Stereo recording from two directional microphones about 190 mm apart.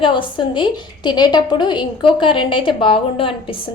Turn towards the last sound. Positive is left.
turn(degrees=30)  # may be behind; listen again after turning